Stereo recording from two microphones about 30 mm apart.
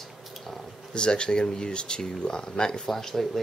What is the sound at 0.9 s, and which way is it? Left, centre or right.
Speech, left.